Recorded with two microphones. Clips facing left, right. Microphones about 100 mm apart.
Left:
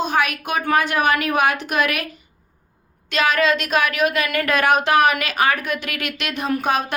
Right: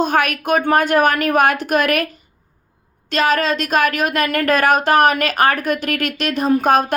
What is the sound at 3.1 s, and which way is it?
A woman's voice, 40° right (ahead or behind).